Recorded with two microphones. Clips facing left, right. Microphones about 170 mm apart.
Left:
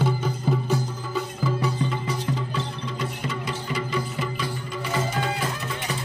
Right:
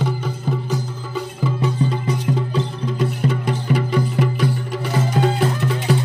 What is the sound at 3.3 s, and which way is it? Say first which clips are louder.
Music: right 9 dB; 55° right (ahead or behind).